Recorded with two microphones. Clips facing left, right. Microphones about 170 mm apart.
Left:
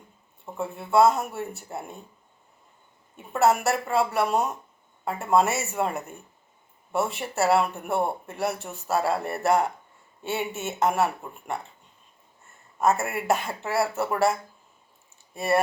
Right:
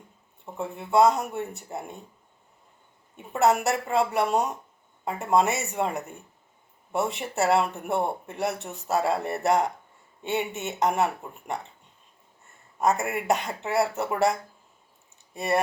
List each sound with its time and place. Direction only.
0.8 s speech: 20° right (ahead or behind)
3.3 s speech: 20° right (ahead or behind)
12.8 s speech: 20° right (ahead or behind)
15.4 s speech: 20° right (ahead or behind)